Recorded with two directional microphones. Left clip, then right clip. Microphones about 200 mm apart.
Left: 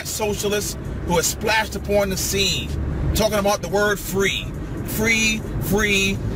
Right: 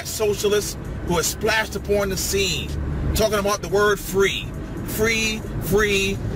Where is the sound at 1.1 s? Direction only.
15° left (ahead or behind).